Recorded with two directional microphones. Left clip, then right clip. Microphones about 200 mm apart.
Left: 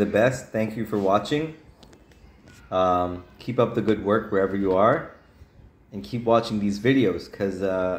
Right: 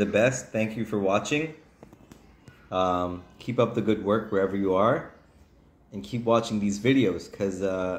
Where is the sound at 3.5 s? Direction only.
15° left (ahead or behind).